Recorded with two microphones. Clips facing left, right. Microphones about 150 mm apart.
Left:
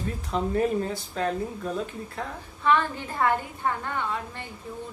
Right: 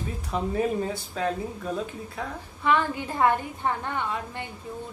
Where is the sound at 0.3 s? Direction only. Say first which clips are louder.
Left 1 dB; 5° right (ahead or behind).